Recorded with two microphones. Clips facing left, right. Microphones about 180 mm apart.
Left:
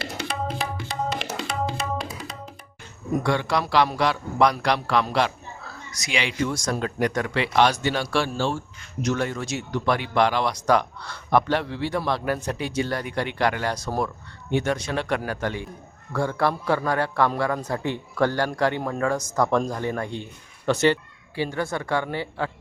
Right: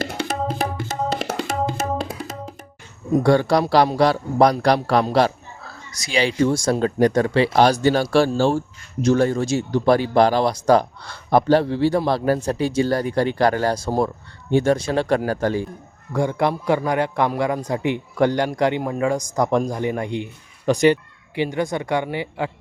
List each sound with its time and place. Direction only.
0.0 s music: 45° right (ahead or behind)
3.2 s a man's voice: 35° right (ahead or behind)
16.1 s a man's voice: 20° right (ahead or behind)